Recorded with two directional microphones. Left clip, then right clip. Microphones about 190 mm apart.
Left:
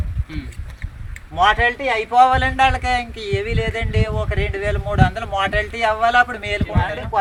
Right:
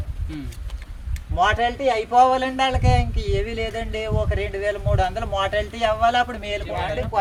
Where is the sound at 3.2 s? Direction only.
25° right (ahead or behind).